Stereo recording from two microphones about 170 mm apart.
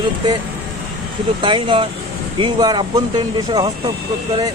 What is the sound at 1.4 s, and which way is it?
Speech, 30° right (ahead or behind).